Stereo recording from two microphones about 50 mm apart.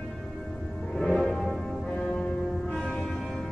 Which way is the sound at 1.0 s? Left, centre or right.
Centre.